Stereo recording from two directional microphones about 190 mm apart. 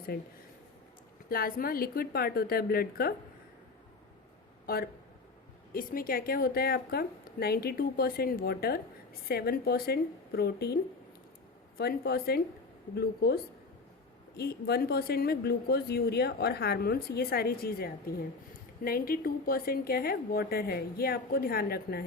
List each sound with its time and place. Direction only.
0.1 s speech: 55° left (ahead or behind)
1.3 s a woman's voice: 50° left (ahead or behind)
4.6 s a woman's voice: 50° left (ahead or behind)
11.8 s a woman's voice: 55° left (ahead or behind)